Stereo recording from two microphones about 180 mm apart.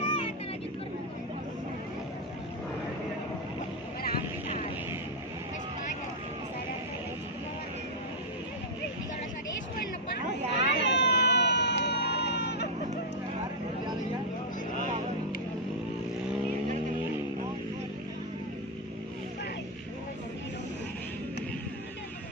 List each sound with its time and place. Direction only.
0.0 s vehicle: 30° left (ahead or behind)
10.5 s vehicle: 75° left (ahead or behind)